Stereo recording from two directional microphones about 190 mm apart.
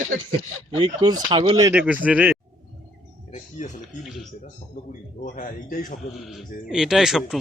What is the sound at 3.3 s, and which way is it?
Speech, 40° left (ahead or behind).